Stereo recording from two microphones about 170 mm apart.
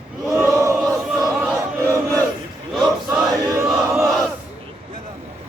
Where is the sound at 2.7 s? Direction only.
Centre (ahead or behind).